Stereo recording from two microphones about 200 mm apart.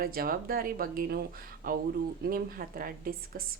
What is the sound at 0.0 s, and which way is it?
A woman's voice, 45° right (ahead or behind).